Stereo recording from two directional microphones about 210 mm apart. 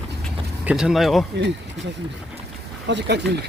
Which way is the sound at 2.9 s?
55° right (ahead or behind).